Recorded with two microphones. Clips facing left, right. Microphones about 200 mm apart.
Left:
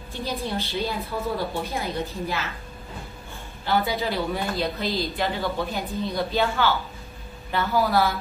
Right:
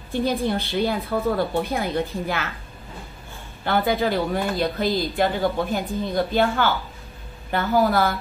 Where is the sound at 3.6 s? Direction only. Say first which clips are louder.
Right 3 dB; 50° right (ahead or behind).